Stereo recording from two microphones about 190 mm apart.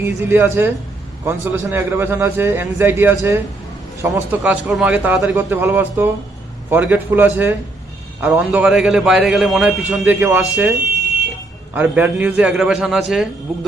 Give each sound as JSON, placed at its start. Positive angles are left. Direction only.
{"t": 0.0, "sound": "a man's voice", "side_deg": -10}
{"t": 11.7, "sound": "a man's voice", "side_deg": -10}